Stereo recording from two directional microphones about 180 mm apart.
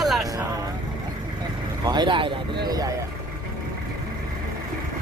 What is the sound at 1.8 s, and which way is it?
Speech, 25° right (ahead or behind).